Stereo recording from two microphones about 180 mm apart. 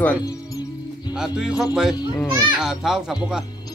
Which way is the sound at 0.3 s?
20° left (ahead or behind).